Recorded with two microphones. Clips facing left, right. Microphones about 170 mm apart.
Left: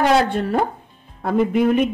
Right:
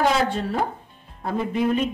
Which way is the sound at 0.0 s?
65° left (ahead or behind).